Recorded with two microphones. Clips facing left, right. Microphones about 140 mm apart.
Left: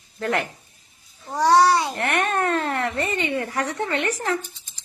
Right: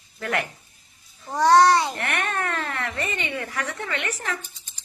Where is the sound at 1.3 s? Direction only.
15° left (ahead or behind).